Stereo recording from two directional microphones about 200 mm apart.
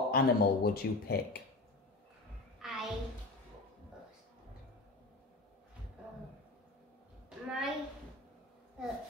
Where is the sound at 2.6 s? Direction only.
Centre (ahead or behind).